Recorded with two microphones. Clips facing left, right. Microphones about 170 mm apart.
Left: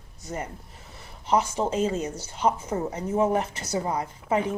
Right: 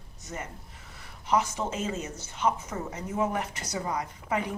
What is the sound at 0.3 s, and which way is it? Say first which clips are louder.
A woman's voice: left 5 dB; 30° left (ahead or behind).